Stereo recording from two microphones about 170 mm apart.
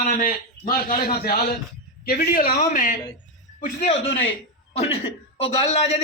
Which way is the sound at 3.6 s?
45° left (ahead or behind).